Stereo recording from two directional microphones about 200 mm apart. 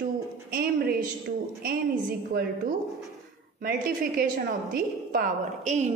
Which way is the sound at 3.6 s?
45° right (ahead or behind).